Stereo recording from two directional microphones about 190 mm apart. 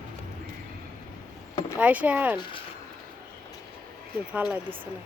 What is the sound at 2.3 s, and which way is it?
Speech, 25° left (ahead or behind).